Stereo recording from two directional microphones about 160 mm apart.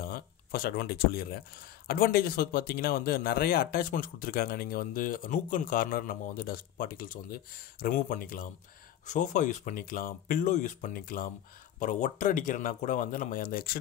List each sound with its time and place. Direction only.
0.0 s speech: 70° left (ahead or behind)